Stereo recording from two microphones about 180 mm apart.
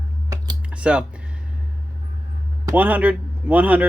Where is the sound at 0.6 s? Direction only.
5° right (ahead or behind).